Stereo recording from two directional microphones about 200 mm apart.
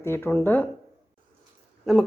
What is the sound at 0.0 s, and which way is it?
Speech, 10° left (ahead or behind).